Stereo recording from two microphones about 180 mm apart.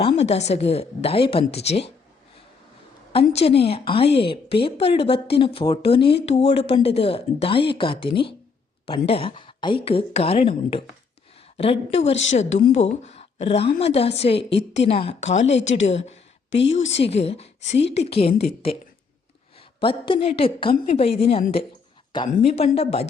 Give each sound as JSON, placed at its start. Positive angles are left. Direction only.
{"t": 0.0, "sound": "speech", "side_deg": 35}
{"t": 3.1, "sound": "a woman's voice", "side_deg": 30}